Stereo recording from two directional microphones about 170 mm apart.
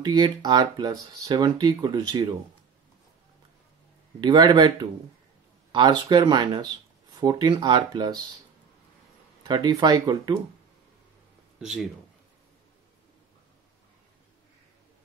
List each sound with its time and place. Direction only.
0.0 s speech: 25° right (ahead or behind)
4.2 s speech: 25° right (ahead or behind)
9.5 s speech: 25° right (ahead or behind)
11.6 s speech: centre (ahead or behind)